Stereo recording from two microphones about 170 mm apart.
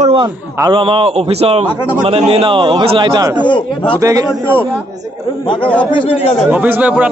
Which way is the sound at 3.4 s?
30° left (ahead or behind).